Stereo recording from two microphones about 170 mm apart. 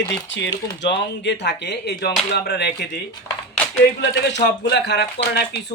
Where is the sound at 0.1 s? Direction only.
90° left.